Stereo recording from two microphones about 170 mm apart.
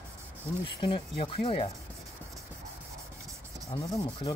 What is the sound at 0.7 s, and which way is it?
Speech, 30° left (ahead or behind).